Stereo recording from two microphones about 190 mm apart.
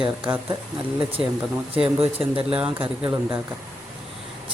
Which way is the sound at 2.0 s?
30° right (ahead or behind).